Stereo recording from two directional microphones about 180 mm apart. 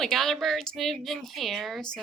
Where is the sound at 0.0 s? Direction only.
Centre (ahead or behind).